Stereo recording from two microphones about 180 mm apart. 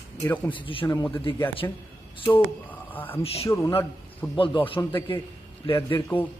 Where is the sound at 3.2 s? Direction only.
35° left (ahead or behind).